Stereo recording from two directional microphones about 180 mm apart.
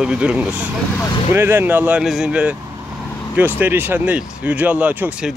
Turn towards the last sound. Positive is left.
turn(degrees=-5)  # may be behind; listen again after turning